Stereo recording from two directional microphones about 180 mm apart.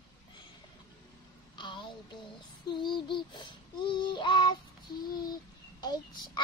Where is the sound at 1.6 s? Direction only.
25° left (ahead or behind).